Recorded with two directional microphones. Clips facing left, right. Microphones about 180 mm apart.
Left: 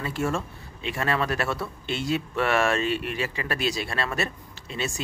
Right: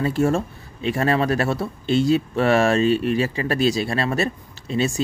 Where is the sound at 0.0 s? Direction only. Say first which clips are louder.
Right 8 dB; 40° right (ahead or behind).